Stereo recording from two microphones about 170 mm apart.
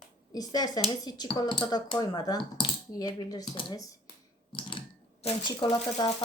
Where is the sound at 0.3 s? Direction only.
20° left (ahead or behind).